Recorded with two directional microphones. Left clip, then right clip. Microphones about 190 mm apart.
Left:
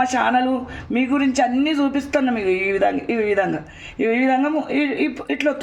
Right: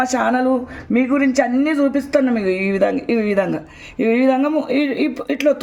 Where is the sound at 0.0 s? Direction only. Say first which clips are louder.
Right 1 dB; 35° right (ahead or behind).